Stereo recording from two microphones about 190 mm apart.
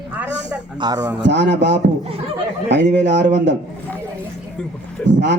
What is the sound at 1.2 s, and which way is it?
Speech, 65° right (ahead or behind).